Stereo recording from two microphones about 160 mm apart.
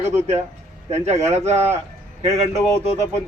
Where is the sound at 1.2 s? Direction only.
45° right (ahead or behind).